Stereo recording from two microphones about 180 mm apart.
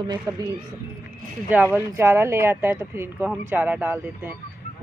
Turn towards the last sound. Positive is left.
turn(degrees=-10)  # may be behind; listen again after turning